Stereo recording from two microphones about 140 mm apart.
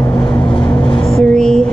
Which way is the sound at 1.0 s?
5° left (ahead or behind).